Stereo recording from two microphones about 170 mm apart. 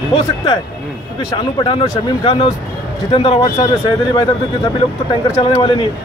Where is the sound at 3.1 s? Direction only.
30° left (ahead or behind).